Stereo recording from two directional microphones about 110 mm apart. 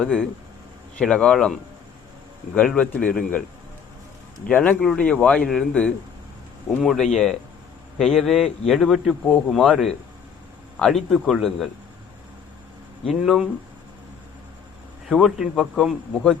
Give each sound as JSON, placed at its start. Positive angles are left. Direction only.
{"t": 0.9, "sound": "a man's voice", "side_deg": 5}
{"t": 2.6, "sound": "a man's voice", "side_deg": 10}
{"t": 4.4, "sound": "a man's voice", "side_deg": 15}
{"t": 13.1, "sound": "a man's voice", "side_deg": 0}
{"t": 15.0, "sound": "a man's voice", "side_deg": 0}